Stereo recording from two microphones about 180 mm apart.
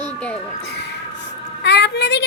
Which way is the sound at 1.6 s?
70° left (ahead or behind).